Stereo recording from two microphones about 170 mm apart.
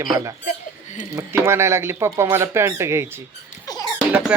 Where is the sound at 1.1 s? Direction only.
15° right (ahead or behind).